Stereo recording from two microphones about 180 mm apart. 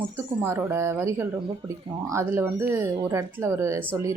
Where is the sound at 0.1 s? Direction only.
15° right (ahead or behind).